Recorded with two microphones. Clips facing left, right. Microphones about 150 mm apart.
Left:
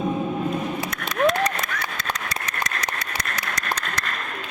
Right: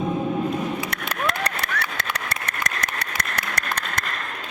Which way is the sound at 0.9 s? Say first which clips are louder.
Left 6 dB; 65° right (ahead or behind).